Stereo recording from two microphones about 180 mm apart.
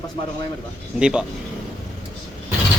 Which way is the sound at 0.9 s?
5° right (ahead or behind).